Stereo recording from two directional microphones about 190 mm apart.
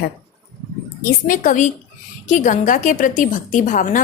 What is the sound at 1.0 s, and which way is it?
A woman's voice, 45° left (ahead or behind).